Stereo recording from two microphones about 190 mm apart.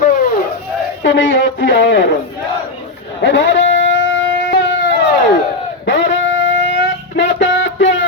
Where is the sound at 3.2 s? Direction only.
65° left (ahead or behind).